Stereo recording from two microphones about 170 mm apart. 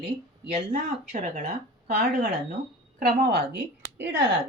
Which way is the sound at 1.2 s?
55° right (ahead or behind).